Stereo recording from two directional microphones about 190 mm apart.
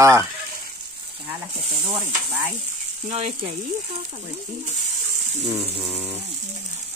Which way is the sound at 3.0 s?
35° right (ahead or behind).